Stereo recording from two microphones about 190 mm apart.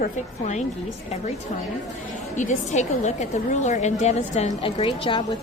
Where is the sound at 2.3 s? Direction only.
40° left (ahead or behind).